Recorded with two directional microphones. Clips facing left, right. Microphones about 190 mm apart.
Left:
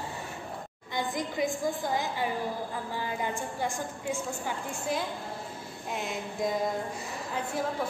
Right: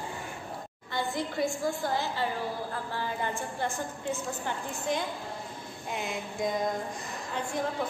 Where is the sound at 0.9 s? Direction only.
15° left (ahead or behind).